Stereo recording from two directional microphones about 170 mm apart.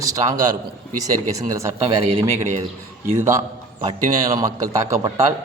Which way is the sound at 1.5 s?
20° right (ahead or behind).